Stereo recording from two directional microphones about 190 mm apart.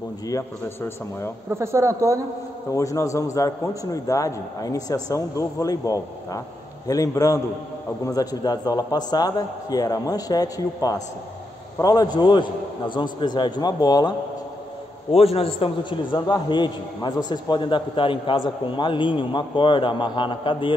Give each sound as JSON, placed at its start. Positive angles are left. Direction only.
{"t": 0.3, "sound": "a man's voice", "side_deg": 15}
{"t": 1.5, "sound": "speech", "side_deg": -15}
{"t": 2.7, "sound": "a man's voice", "side_deg": 15}
{"t": 15.1, "sound": "a man's voice", "side_deg": 30}